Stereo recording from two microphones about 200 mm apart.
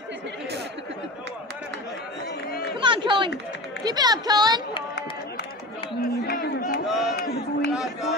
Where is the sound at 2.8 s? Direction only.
25° right (ahead or behind).